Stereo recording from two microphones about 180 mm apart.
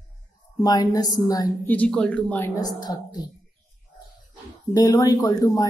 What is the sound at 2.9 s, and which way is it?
Speech, 20° left (ahead or behind).